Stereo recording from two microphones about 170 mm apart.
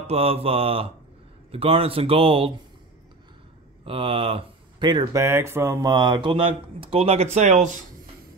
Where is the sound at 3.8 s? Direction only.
30° right (ahead or behind).